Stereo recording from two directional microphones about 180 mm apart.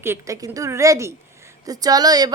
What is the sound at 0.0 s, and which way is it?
A woman's voice, 15° right (ahead or behind).